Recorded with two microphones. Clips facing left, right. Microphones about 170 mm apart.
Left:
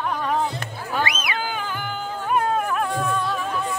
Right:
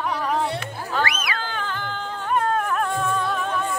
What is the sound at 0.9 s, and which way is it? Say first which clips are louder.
Cat: even; 20° left (ahead or behind).